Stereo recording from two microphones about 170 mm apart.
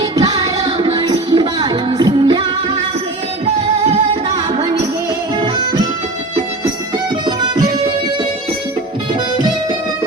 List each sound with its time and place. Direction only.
0.2 s music: 35° right (ahead or behind)
5.4 s music: 25° right (ahead or behind)